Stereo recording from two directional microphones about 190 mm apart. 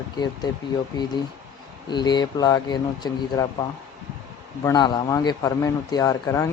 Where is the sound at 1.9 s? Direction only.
20° left (ahead or behind).